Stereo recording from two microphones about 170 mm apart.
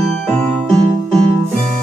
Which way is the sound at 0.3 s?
5° left (ahead or behind).